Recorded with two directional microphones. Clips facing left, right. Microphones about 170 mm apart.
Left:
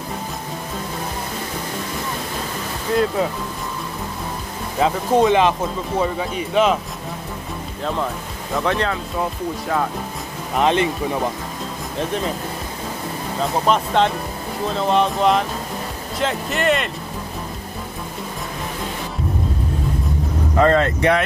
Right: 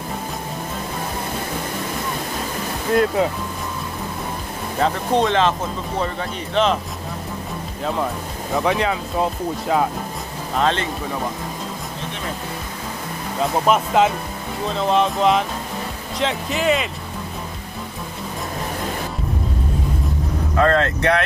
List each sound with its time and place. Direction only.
4.7 s speech: 5° left (ahead or behind)
8.6 s speech: 10° right (ahead or behind)
10.5 s speech: 15° left (ahead or behind)
13.4 s speech: 5° right (ahead or behind)
20.5 s speech: 15° left (ahead or behind)